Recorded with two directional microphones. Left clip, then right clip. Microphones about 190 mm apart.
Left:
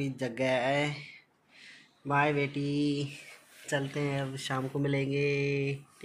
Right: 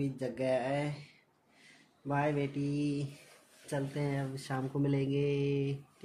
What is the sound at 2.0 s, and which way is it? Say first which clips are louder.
Speech: left 5 dB; 15° left (ahead or behind).